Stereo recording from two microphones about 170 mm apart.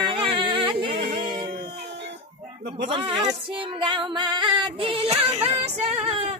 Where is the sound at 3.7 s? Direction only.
30° right (ahead or behind).